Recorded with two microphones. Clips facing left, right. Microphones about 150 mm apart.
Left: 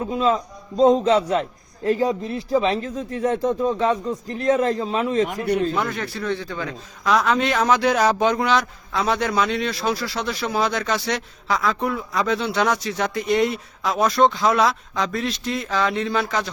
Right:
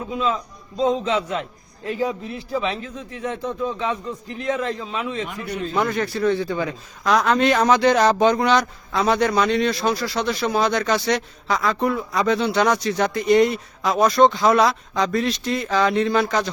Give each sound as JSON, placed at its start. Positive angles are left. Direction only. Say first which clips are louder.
{"t": 0.1, "sound": "a man's voice", "louder": "left 2 dB", "side_deg": 40}
{"t": 5.7, "sound": "speech", "louder": "right 3 dB", "side_deg": 0}
{"t": 7.0, "sound": "speech", "louder": "right 2 dB", "side_deg": 0}